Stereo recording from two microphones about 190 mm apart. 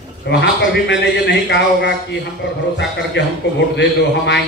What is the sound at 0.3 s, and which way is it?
A man's voice, 65° left (ahead or behind).